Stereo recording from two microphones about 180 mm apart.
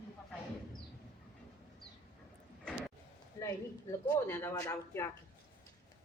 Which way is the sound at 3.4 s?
15° left (ahead or behind).